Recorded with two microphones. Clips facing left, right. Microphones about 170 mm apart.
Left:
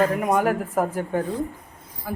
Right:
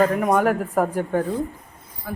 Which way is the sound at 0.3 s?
45° right (ahead or behind).